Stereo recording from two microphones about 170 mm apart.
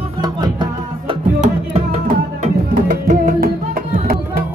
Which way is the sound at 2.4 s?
50° right (ahead or behind).